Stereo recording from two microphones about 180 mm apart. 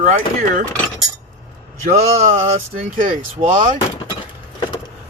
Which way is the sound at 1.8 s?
40° right (ahead or behind).